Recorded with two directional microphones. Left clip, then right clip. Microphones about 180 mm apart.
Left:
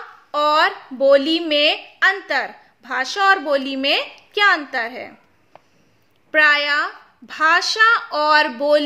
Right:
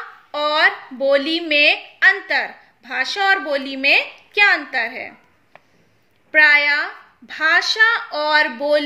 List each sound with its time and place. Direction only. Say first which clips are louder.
0.3 s a woman's voice: even; 50° left (ahead or behind)
6.3 s a woman's voice: right 2 dB; 55° left (ahead or behind)